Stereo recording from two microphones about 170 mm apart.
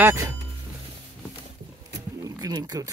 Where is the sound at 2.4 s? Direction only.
20° right (ahead or behind).